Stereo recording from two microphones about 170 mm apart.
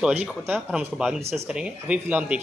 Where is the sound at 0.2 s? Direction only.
10° right (ahead or behind).